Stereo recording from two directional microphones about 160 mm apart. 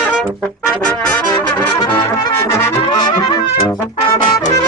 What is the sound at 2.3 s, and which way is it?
Brass instrument, 15° left (ahead or behind).